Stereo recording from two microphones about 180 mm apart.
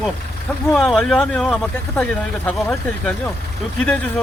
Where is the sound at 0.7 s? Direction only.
5° left (ahead or behind).